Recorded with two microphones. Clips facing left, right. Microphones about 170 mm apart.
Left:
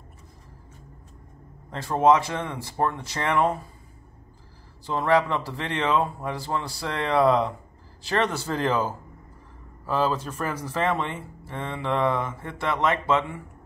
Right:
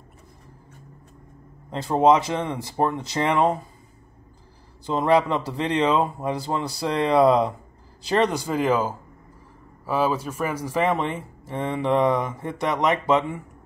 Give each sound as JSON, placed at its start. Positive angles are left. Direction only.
{"t": 1.7, "sound": "speech", "side_deg": -20}
{"t": 4.8, "sound": "speech", "side_deg": -20}